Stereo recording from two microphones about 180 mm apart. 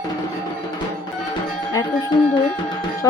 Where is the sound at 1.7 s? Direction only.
20° left (ahead or behind).